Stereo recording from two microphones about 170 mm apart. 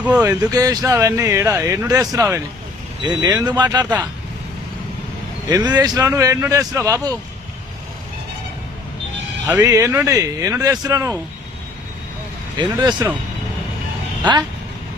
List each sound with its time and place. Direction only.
0.0 s speech: 10° right (ahead or behind)
0.3 s speech: 20° right (ahead or behind)
5.5 s speech: 25° right (ahead or behind)
9.6 s speech: 20° right (ahead or behind)
12.5 s speech: 25° right (ahead or behind)